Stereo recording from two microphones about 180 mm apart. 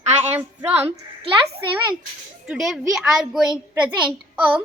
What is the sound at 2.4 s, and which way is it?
A woman's voice, 5° right (ahead or behind).